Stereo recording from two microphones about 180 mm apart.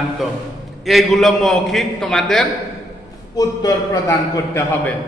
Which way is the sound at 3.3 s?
20° left (ahead or behind).